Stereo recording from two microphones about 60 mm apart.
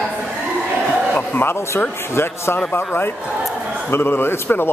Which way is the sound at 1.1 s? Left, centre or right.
Left.